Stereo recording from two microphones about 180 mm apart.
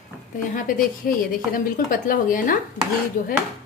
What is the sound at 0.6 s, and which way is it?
A woman's voice, 50° left (ahead or behind).